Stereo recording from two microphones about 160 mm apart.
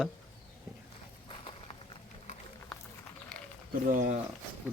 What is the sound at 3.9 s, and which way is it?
Speech, 55° right (ahead or behind).